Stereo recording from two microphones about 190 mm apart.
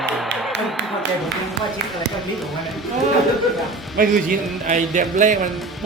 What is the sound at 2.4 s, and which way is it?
Speech, centre (ahead or behind).